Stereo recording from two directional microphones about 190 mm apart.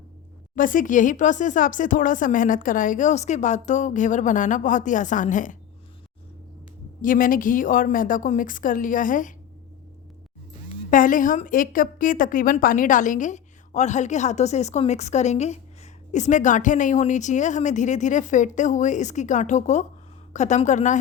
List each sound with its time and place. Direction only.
0.5 s speech: 45° left (ahead or behind)
7.0 s speech: 45° left (ahead or behind)
10.9 s a woman's voice: 45° left (ahead or behind)